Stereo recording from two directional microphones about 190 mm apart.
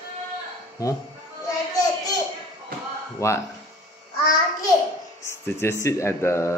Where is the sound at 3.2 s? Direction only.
15° left (ahead or behind).